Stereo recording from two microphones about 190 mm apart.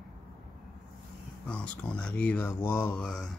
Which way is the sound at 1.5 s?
5° left (ahead or behind).